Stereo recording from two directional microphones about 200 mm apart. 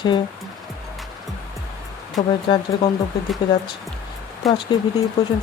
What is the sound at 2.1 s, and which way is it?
Speech, 20° left (ahead or behind).